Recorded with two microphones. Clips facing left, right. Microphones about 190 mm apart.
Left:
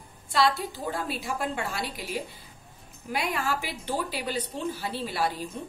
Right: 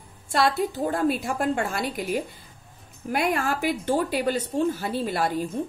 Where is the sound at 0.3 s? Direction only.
50° right (ahead or behind).